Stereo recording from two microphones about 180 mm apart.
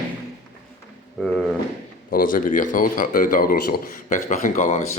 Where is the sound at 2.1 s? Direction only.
50° left (ahead or behind).